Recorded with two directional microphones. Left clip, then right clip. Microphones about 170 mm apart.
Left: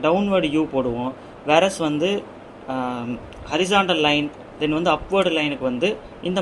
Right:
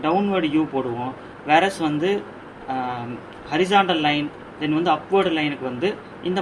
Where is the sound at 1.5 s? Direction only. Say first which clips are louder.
Even; 60° left (ahead or behind).